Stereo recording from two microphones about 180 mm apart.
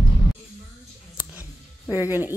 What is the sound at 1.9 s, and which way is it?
Music, 10° right (ahead or behind).